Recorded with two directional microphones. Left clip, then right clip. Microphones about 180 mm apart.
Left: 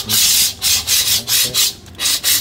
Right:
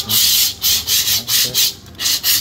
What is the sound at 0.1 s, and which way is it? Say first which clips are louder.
Rub: even; 10° left (ahead or behind).